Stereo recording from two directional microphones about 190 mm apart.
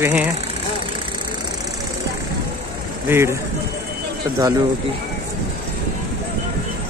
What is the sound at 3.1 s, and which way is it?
Speech, 15° right (ahead or behind).